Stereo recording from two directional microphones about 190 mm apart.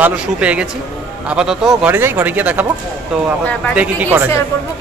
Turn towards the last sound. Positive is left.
turn(degrees=-10)  # may be behind; listen again after turning